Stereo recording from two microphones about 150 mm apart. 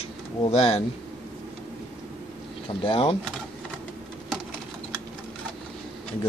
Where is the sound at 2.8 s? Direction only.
40° left (ahead or behind).